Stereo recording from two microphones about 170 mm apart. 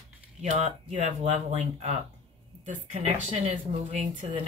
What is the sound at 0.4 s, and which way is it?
Speech, 40° right (ahead or behind).